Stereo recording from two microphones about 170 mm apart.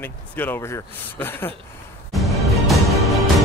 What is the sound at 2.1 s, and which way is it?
Music, centre (ahead or behind).